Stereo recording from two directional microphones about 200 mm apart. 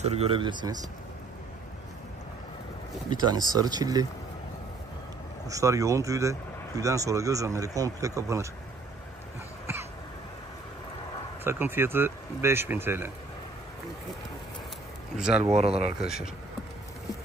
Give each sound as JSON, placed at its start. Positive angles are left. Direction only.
{"t": 0.0, "sound": "speech", "side_deg": -30}
{"t": 3.1, "sound": "speech", "side_deg": -20}
{"t": 5.5, "sound": "speech", "side_deg": -15}
{"t": 9.7, "sound": "cough", "side_deg": -10}
{"t": 11.4, "sound": "speech", "side_deg": -10}
{"t": 15.1, "sound": "speech", "side_deg": -5}
{"t": 15.5, "sound": "speech", "side_deg": -30}